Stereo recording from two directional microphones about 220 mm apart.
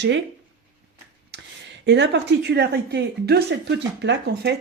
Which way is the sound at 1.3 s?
50° right (ahead or behind).